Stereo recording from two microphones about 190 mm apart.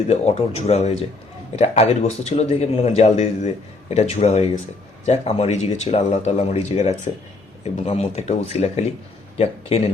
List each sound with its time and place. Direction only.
0.1 s a man's voice: 35° left (ahead or behind)